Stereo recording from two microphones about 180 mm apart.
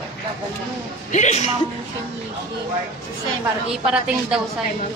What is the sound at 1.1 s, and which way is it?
Speech, 40° left (ahead or behind).